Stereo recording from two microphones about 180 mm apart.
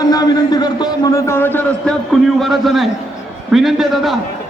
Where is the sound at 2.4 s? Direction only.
Centre (ahead or behind).